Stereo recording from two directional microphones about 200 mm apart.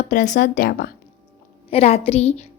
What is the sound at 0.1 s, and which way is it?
Speech, 40° left (ahead or behind).